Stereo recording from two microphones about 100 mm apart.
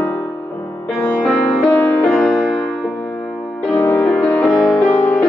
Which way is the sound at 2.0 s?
5° left (ahead or behind).